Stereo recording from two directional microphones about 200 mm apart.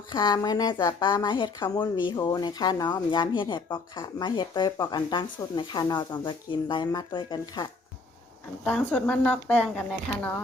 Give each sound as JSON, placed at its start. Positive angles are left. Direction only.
{"t": 0.1, "sound": "speech", "side_deg": 20}
{"t": 8.6, "sound": "a woman's voice", "side_deg": 5}